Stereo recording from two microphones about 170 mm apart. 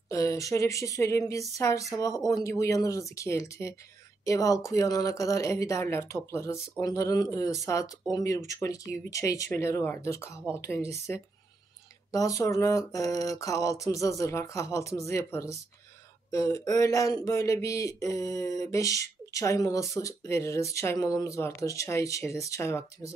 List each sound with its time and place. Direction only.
0.1 s speech: 20° left (ahead or behind)